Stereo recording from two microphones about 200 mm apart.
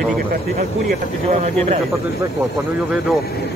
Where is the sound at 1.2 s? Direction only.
30° right (ahead or behind).